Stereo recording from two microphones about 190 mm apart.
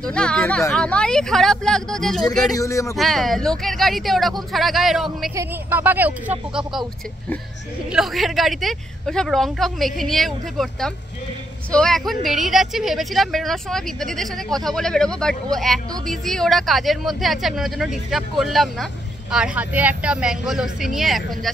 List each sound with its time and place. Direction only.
0.0 s speech: 5° left (ahead or behind)
2.5 s a man's voice: 15° left (ahead or behind)
3.0 s speech: centre (ahead or behind)
5.3 s a woman's voice: 10° right (ahead or behind)
7.9 s speech: centre (ahead or behind)